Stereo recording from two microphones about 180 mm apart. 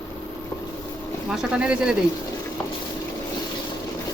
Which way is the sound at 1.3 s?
5° right (ahead or behind).